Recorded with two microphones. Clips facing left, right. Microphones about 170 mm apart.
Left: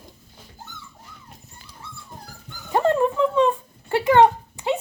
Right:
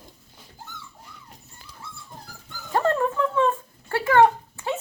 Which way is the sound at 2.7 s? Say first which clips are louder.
Left 3 dB; 20° left (ahead or behind).